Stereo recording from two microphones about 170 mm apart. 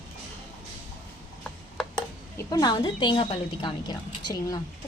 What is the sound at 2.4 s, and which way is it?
A woman's voice, 25° left (ahead or behind).